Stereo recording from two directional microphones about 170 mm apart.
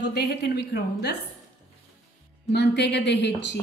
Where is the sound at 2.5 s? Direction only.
85° left.